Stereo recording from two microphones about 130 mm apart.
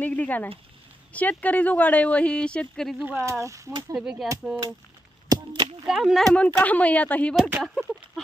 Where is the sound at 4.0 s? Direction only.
5° right (ahead or behind).